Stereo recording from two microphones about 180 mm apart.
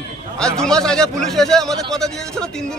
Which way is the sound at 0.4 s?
5° left (ahead or behind).